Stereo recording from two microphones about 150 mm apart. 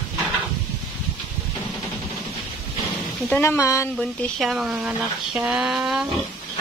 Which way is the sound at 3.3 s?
15° left (ahead or behind).